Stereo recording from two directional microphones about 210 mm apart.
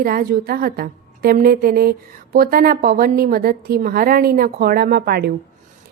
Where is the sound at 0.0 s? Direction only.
45° right (ahead or behind).